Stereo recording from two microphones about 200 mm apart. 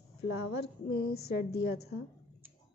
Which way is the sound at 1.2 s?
50° left (ahead or behind).